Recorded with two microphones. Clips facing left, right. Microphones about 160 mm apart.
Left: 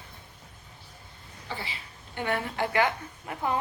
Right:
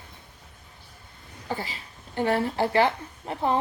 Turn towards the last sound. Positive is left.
turn(degrees=-30)  # may be behind; listen again after turning